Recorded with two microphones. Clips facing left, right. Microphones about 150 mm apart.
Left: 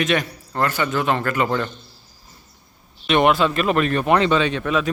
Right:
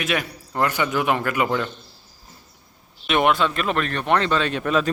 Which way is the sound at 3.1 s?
Centre (ahead or behind).